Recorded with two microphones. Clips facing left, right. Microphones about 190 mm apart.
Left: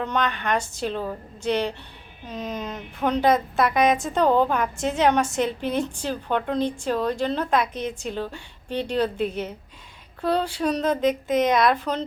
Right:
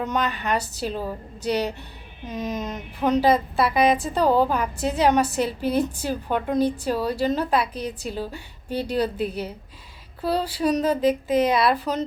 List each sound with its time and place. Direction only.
0.0 s a woman's voice: 5° right (ahead or behind)
7.7 s a woman's voice: 35° right (ahead or behind)
8.0 s a woman's voice: 10° right (ahead or behind)
9.1 s a woman's voice: 35° right (ahead or behind)
10.2 s a woman's voice: 5° right (ahead or behind)